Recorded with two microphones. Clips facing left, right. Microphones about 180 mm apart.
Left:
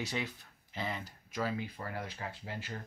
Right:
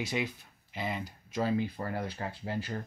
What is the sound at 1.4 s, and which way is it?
Speech, 30° right (ahead or behind).